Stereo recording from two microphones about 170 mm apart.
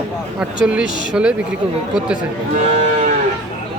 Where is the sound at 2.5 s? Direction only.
45° right (ahead or behind).